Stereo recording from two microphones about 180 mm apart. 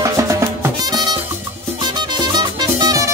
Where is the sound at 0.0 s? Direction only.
15° right (ahead or behind).